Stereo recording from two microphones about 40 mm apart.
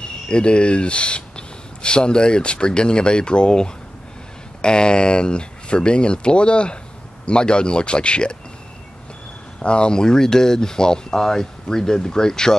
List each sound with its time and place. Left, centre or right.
0.0 s speech: left
9.6 s speech: left